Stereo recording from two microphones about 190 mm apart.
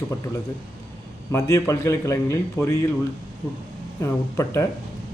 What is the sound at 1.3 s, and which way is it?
Speech, 15° left (ahead or behind).